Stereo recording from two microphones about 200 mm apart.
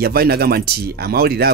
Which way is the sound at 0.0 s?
50° right (ahead or behind).